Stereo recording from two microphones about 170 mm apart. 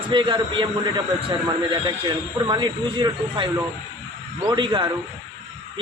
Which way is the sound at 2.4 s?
30° right (ahead or behind).